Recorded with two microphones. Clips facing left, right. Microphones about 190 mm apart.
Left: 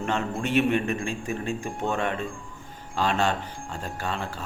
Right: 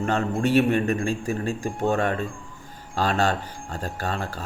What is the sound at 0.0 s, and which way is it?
A man's voice, 40° right (ahead or behind).